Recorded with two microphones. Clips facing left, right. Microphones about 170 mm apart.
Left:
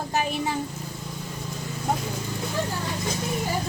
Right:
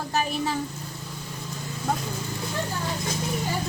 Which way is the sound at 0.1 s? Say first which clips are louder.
Even; 20° left (ahead or behind).